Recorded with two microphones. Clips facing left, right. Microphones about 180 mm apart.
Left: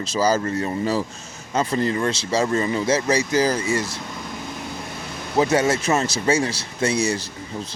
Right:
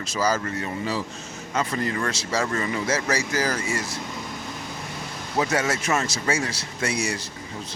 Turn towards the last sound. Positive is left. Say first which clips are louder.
# left 5 dB
turn(degrees=25)  # may be behind; listen again after turning